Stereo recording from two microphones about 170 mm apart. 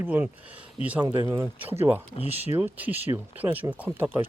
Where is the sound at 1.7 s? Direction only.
15° right (ahead or behind).